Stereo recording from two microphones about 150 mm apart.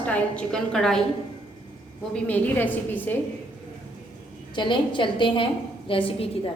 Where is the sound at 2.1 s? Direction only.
10° left (ahead or behind).